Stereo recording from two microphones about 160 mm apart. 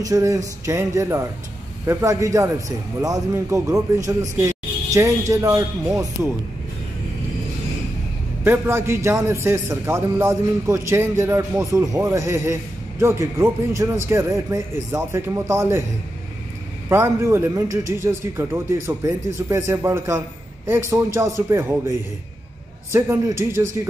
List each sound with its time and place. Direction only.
0.0 s a man's voice: 20° right (ahead or behind)
8.5 s speech: 15° right (ahead or behind)
16.9 s speech: 15° right (ahead or behind)
22.9 s speech: 15° right (ahead or behind)